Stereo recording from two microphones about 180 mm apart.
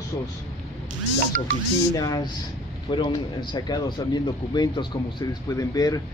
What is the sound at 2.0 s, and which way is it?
Speech, 20° left (ahead or behind).